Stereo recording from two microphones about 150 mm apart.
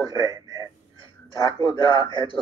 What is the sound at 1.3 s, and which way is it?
Speech, 25° left (ahead or behind).